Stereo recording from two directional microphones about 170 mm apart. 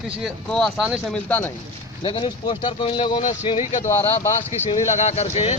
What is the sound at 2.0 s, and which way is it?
Speech, 30° left (ahead or behind).